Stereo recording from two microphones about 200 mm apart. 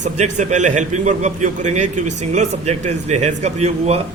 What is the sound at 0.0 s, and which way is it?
A man's voice, 35° right (ahead or behind).